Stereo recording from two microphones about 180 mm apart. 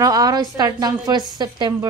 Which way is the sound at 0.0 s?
20° right (ahead or behind).